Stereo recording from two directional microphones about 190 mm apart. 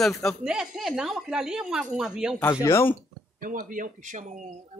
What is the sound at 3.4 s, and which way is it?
Speech, 45° right (ahead or behind).